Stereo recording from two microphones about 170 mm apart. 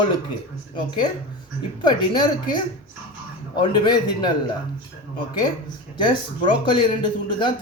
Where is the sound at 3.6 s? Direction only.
25° left (ahead or behind).